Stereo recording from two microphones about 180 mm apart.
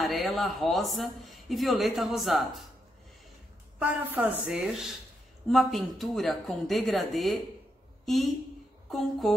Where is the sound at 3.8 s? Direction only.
10° right (ahead or behind).